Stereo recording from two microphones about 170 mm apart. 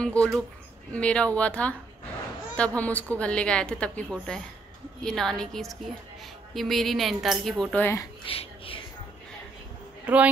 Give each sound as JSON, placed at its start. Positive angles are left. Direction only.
{"t": 0.0, "sound": "a woman's voice", "side_deg": 5}
{"t": 8.3, "sound": "a sound", "side_deg": 35}
{"t": 10.0, "sound": "a woman's voice", "side_deg": -10}